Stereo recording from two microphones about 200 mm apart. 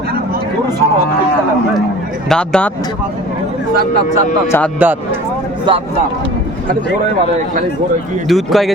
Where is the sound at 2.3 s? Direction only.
5° left (ahead or behind).